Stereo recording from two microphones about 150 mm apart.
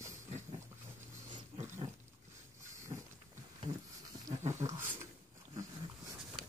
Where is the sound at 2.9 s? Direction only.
35° right (ahead or behind).